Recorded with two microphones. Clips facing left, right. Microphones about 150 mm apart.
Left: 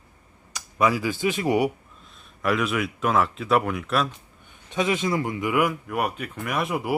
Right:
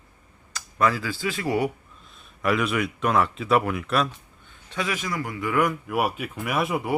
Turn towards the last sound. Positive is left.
turn(degrees=0)  # may be behind; listen again after turning